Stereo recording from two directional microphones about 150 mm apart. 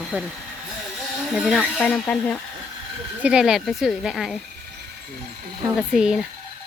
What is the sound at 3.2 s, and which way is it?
Speech, 5° right (ahead or behind).